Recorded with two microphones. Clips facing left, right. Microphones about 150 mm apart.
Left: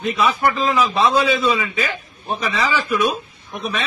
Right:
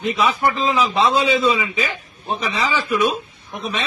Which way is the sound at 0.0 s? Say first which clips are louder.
Even; 20° right (ahead or behind).